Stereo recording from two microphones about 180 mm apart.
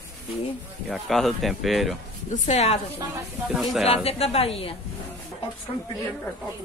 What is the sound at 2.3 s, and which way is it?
Speech, 40° left (ahead or behind).